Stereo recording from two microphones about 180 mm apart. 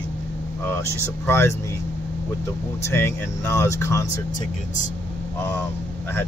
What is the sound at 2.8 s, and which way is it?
Speech, 15° left (ahead or behind).